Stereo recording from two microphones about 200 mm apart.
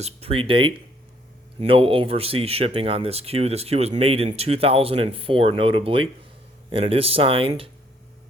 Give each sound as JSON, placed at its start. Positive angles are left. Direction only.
{"t": 0.0, "sound": "speech", "side_deg": -30}